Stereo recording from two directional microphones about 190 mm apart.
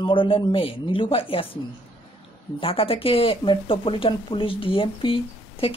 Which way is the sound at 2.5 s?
30° left (ahead or behind).